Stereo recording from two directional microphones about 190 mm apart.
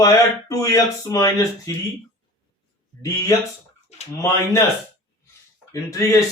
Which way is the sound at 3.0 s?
15° left (ahead or behind).